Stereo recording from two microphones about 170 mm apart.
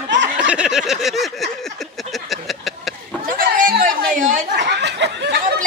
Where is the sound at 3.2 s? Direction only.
50° right (ahead or behind).